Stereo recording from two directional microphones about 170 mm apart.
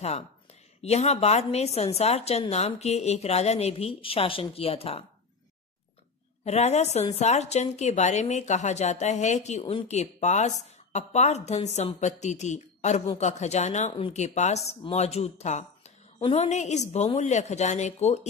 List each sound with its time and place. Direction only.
0.8 s a woman's voice: 40° left (ahead or behind)
6.4 s a woman's voice: 40° left (ahead or behind)